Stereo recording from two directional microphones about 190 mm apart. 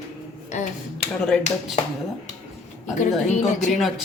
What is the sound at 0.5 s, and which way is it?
Speech, 40° left (ahead or behind).